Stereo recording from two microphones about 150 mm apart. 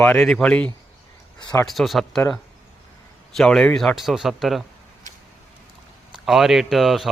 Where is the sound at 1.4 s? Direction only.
30° left (ahead or behind).